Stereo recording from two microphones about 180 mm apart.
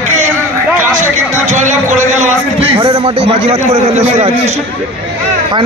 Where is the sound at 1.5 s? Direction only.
40° right (ahead or behind).